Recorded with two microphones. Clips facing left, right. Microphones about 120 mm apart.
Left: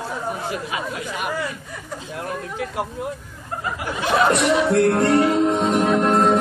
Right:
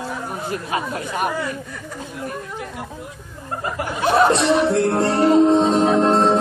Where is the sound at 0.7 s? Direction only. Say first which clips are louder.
Right 3 dB; 40° right (ahead or behind).